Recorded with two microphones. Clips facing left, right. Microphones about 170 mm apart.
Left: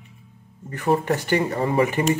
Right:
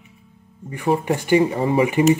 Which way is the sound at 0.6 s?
15° right (ahead or behind).